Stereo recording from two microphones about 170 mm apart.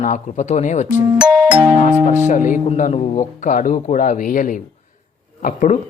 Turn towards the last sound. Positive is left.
turn(degrees=50)  # may be behind; listen again after turning